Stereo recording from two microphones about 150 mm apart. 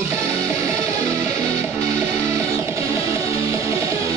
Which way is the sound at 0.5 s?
20° right (ahead or behind).